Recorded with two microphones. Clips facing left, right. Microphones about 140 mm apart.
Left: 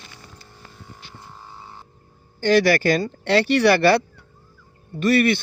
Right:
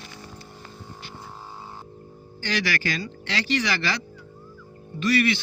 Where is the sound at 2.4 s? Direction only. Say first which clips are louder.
Left 11 dB; 50° left (ahead or behind).